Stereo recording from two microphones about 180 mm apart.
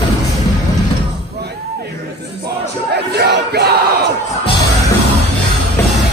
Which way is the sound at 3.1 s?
65° right (ahead or behind).